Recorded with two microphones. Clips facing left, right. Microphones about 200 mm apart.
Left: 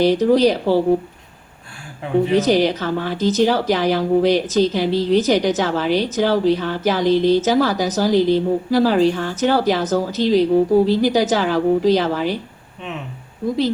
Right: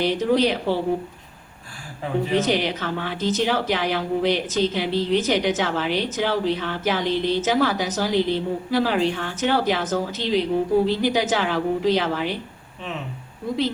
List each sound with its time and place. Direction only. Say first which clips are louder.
0.0 s speech: left 6 dB; 40° left (ahead or behind)
2.3 s speech: left 5 dB; 40° left (ahead or behind)